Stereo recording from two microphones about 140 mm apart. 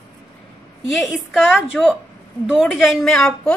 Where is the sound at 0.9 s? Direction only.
Centre (ahead or behind).